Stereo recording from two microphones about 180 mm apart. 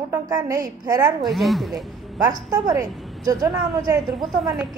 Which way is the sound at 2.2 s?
20° right (ahead or behind).